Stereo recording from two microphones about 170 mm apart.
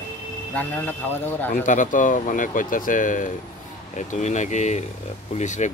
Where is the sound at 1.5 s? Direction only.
50° left (ahead or behind).